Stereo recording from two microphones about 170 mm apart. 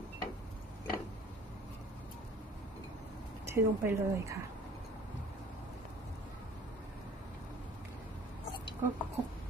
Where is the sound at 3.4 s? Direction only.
15° right (ahead or behind).